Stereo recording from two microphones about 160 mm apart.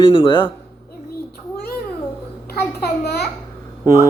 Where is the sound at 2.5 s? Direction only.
85° left.